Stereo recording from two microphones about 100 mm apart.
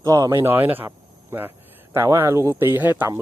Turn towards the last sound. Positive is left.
turn(degrees=-20)  # may be behind; listen again after turning